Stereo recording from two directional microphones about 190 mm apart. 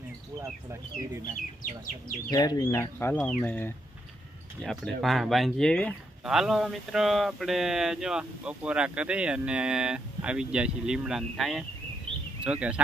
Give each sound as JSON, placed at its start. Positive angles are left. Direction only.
{"t": 0.4, "sound": "speech", "side_deg": -15}
{"t": 2.3, "sound": "speech", "side_deg": 20}